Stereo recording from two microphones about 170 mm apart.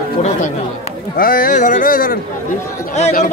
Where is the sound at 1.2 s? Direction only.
55° left (ahead or behind).